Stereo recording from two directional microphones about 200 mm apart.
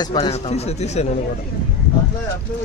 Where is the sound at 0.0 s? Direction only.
20° left (ahead or behind).